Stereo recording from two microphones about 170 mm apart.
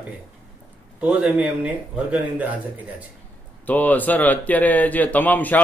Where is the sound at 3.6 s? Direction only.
10° left (ahead or behind).